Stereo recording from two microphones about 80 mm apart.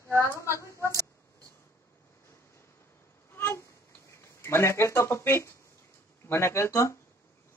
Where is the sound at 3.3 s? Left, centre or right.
Left.